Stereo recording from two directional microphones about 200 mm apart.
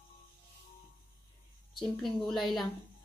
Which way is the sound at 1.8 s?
Centre (ahead or behind).